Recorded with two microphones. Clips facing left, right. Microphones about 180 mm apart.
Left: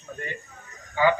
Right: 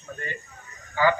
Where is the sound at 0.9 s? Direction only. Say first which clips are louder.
Left 1 dB; 20° left (ahead or behind).